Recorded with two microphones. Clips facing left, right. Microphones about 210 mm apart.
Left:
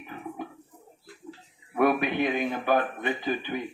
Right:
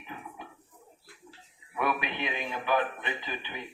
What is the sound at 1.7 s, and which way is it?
Speech, 50° left (ahead or behind).